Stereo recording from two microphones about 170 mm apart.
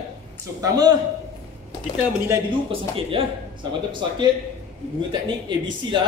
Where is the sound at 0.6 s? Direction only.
20° right (ahead or behind).